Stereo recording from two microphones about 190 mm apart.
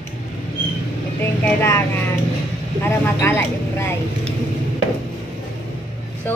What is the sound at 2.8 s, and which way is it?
Speech, 15° left (ahead or behind).